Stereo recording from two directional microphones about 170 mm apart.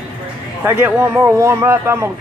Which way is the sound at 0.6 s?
15° right (ahead or behind).